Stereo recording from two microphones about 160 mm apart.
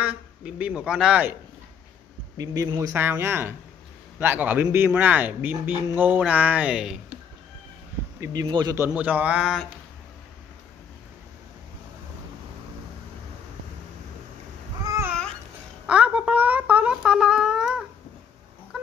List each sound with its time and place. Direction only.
0.0 s speech: 5° right (ahead or behind)
2.3 s speech: 20° right (ahead or behind); by 7.0 s 5° right (ahead or behind)
8.2 s speech: 25° right (ahead or behind); by 9.7 s 5° right (ahead or behind)
14.9 s babbling: 15° right (ahead or behind)
15.9 s a sound: 10° right (ahead or behind)